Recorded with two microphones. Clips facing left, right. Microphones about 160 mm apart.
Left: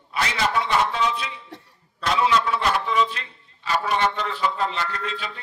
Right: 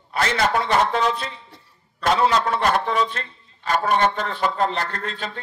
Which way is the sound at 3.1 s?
50° right (ahead or behind).